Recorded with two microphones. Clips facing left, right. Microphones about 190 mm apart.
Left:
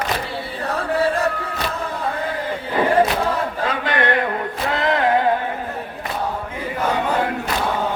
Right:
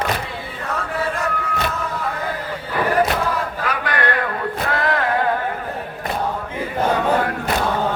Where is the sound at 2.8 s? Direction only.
25° left (ahead or behind).